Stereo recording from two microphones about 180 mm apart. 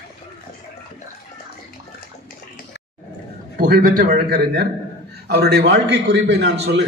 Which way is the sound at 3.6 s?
55° right (ahead or behind).